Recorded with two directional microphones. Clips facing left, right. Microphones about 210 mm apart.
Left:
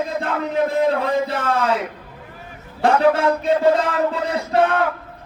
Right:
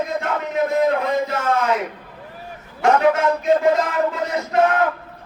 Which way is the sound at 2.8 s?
30° left (ahead or behind).